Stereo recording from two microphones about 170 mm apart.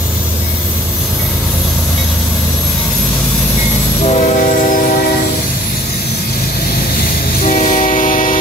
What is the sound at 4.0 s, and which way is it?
Train, 45° left (ahead or behind).